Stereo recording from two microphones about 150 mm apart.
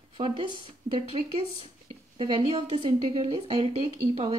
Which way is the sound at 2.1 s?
35° right (ahead or behind).